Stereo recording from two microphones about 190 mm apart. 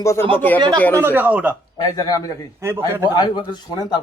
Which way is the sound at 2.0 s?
20° left (ahead or behind).